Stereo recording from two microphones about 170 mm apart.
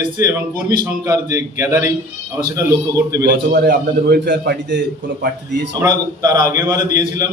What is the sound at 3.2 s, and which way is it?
A man's voice, 65° right (ahead or behind).